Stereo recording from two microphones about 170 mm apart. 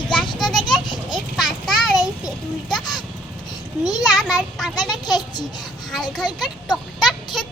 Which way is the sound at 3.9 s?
Centre (ahead or behind).